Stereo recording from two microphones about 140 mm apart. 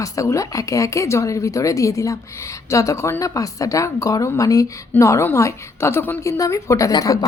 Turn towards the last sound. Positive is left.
turn(degrees=25)  # may be behind; listen again after turning